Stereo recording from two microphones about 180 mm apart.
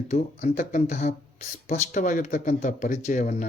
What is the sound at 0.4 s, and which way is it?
Speech, 50° left (ahead or behind).